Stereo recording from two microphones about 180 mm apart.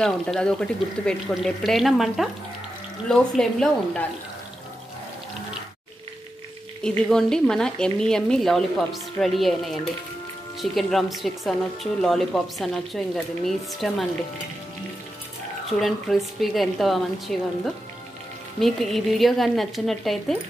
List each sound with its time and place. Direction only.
0.0 s a woman's voice: 5° left (ahead or behind)
7.1 s a woman's voice: 5° left (ahead or behind)
15.8 s a woman's voice: centre (ahead or behind)